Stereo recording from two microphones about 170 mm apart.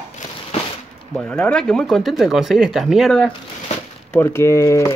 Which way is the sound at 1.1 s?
5° left (ahead or behind).